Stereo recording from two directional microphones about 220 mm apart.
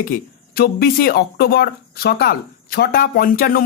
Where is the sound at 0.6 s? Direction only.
45° left (ahead or behind).